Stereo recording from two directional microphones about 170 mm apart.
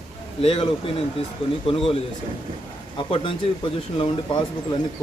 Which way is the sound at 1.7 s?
35° left (ahead or behind).